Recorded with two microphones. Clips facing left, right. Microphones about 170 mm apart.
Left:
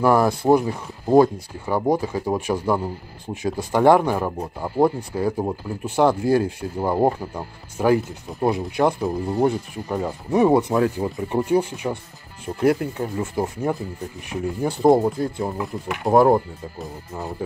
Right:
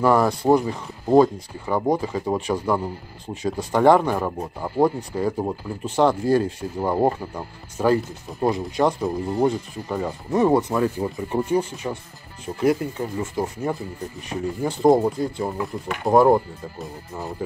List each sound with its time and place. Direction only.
0.0 s speech: 10° left (ahead or behind)
12.8 s speech: 65° left (ahead or behind)
13.2 s speech: 10° left (ahead or behind)